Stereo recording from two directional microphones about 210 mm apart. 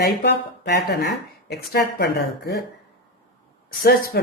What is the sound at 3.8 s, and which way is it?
Speech, 45° left (ahead or behind).